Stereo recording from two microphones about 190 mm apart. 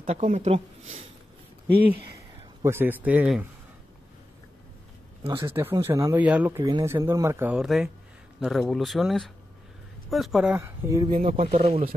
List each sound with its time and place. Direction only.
0.0 s speech: 35° right (ahead or behind)
1.9 s speech: 15° right (ahead or behind)
5.4 s speech: 15° right (ahead or behind)
11.1 s speech: 35° right (ahead or behind)